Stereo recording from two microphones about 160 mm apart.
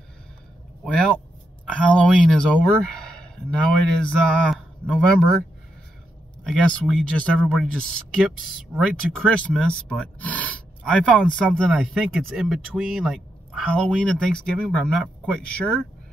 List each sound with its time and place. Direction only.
0.8 s speech: 5° left (ahead or behind)
6.4 s speech: 5° left (ahead or behind)